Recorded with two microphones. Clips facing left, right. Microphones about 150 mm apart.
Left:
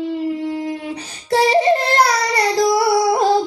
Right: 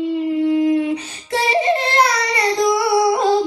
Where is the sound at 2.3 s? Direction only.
35° left (ahead or behind).